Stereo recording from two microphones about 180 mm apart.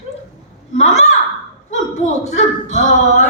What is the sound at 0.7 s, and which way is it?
Speech, 40° left (ahead or behind).